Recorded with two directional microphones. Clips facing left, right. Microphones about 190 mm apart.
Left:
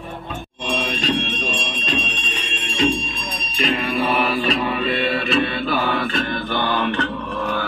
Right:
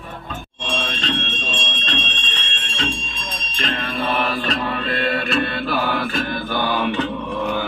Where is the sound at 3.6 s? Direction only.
10° left (ahead or behind).